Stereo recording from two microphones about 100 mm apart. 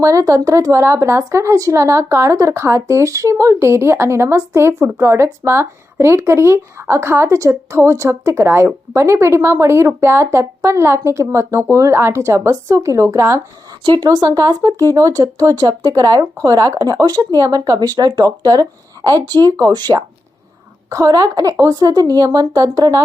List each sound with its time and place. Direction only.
0.0 s a woman's voice: 30° right (ahead or behind)
14.0 s speech: 40° right (ahead or behind)